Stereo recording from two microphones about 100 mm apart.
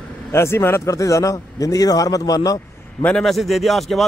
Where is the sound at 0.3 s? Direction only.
25° left (ahead or behind).